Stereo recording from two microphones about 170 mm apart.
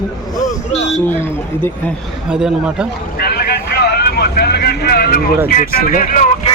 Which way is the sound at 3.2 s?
65° left (ahead or behind).